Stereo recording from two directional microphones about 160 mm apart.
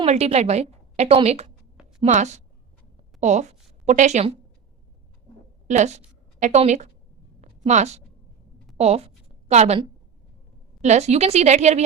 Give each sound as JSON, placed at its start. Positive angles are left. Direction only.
{"t": 0.0, "sound": "a woman's voice", "side_deg": -40}
{"t": 5.6, "sound": "speech", "side_deg": -45}
{"t": 7.4, "sound": "a sound", "side_deg": -45}
{"t": 8.8, "sound": "a woman's voice", "side_deg": -40}